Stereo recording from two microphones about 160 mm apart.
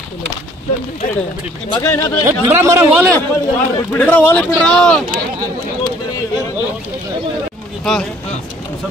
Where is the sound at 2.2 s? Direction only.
15° right (ahead or behind).